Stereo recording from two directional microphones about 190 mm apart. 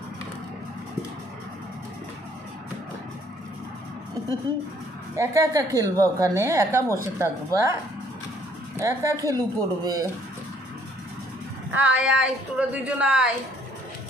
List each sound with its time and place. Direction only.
5.1 s a woman's voice: 15° right (ahead or behind)
8.7 s a woman's voice: 15° right (ahead or behind)
11.7 s speech: 5° right (ahead or behind)